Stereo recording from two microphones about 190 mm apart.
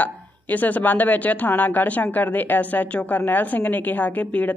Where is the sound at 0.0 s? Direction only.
10° left (ahead or behind).